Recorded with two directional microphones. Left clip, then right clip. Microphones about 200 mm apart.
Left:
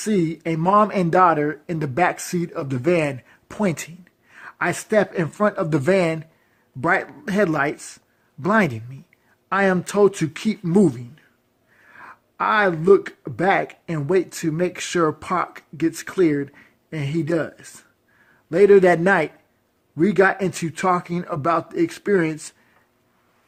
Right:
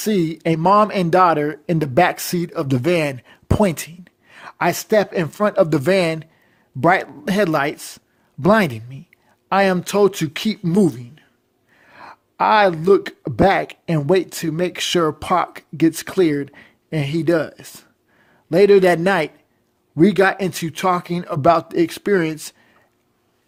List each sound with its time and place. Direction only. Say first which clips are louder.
0.0 s speech: right 3 dB; 45° right (ahead or behind)